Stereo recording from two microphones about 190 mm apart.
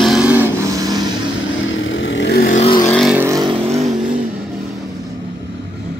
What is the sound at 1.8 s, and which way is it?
Vehicle, 85° left.